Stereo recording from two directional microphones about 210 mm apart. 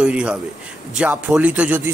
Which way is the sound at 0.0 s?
5° right (ahead or behind).